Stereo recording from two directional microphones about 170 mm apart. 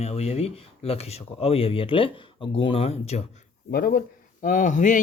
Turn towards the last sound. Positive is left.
turn(degrees=45)  # may be behind; listen again after turning